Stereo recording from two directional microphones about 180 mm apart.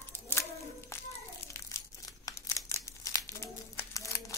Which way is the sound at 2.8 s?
20° left (ahead or behind).